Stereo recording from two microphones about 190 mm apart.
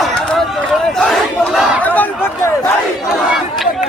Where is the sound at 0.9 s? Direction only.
Centre (ahead or behind).